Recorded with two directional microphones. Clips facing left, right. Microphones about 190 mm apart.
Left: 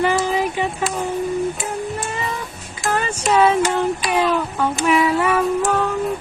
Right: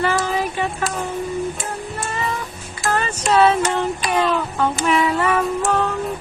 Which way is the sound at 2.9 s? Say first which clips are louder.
Even; 10° left (ahead or behind).